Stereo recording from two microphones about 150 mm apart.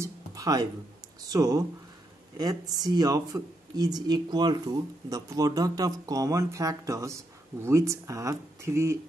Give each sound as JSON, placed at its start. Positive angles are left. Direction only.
{"t": 0.0, "sound": "music", "side_deg": -25}
{"t": 1.3, "sound": "speech", "side_deg": -25}